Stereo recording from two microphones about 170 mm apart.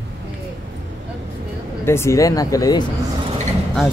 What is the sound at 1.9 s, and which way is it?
Speech, 15° left (ahead or behind).